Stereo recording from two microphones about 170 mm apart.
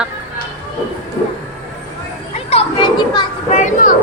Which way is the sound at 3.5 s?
45° left (ahead or behind).